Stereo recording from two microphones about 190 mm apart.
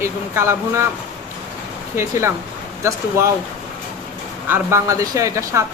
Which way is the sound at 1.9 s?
15° right (ahead or behind).